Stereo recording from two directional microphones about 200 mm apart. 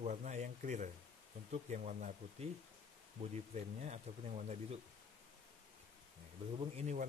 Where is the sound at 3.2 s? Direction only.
30° right (ahead or behind).